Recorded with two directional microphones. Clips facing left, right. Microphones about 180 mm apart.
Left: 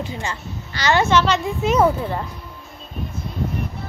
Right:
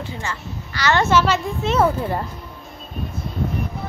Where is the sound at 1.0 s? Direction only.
5° right (ahead or behind).